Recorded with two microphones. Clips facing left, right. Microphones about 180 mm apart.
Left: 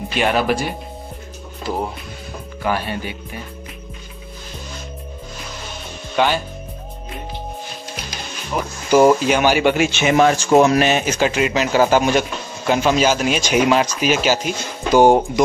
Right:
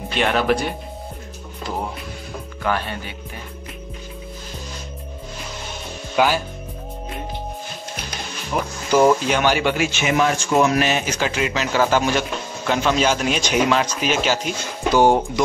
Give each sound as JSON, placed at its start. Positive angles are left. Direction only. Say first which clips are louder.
{"t": 0.1, "sound": "speech", "louder": "left 1 dB", "side_deg": 5}
{"t": 6.1, "sound": "speech", "louder": "even", "side_deg": -5}
{"t": 8.9, "sound": "speech", "louder": "left 3 dB", "side_deg": 10}
{"t": 9.8, "sound": "speech", "louder": "left 5 dB", "side_deg": 30}